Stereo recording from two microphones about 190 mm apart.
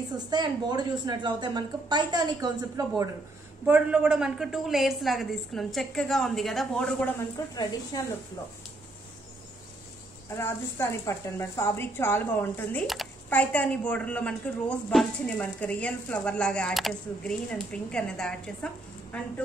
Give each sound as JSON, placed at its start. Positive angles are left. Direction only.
{"t": 0.3, "sound": "a woman's voice", "side_deg": -20}
{"t": 3.6, "sound": "a woman's voice", "side_deg": -10}
{"t": 10.3, "sound": "a woman's voice", "side_deg": 15}
{"t": 12.8, "sound": "a woman's voice", "side_deg": 0}